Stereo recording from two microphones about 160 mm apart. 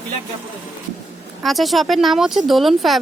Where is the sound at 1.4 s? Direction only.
Centre (ahead or behind).